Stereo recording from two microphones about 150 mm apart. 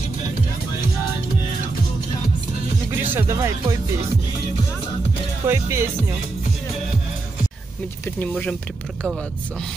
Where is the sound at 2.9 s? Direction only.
15° right (ahead or behind).